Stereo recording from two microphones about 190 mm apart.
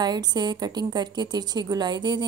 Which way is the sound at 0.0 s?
20° right (ahead or behind).